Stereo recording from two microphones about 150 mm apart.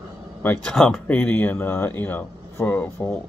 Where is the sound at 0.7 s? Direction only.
Centre (ahead or behind).